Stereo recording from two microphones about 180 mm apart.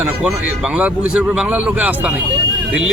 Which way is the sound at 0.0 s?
5° right (ahead or behind).